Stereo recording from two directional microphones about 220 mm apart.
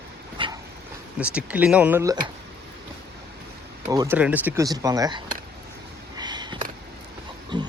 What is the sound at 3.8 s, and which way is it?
Speech, 15° right (ahead or behind).